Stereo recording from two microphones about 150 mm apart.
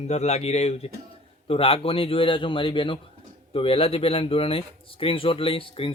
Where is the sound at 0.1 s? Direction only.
45° left (ahead or behind).